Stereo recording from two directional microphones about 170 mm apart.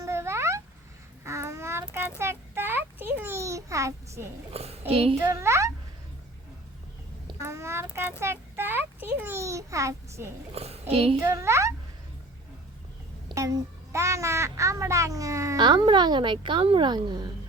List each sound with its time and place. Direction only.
0.0 s a sound: 15° right (ahead or behind)
1.2 s child singing: 15° right (ahead or behind)
1.9 s a sound: 10° right (ahead or behind)
4.5 s a woman's voice: 35° right (ahead or behind)
5.2 s speech: 15° right (ahead or behind)
7.4 s child singing: 15° right (ahead or behind)
8.2 s a sound: 15° right (ahead or behind)
10.5 s a woman's voice: 35° right (ahead or behind)
11.2 s speech: 15° right (ahead or behind)
13.2 s a child's voice: 20° right (ahead or behind)